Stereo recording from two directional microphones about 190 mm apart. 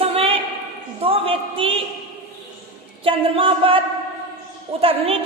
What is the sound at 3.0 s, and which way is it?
Speech, 30° right (ahead or behind).